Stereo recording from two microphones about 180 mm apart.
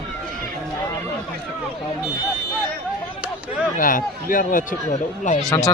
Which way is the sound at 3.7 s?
50° left (ahead or behind).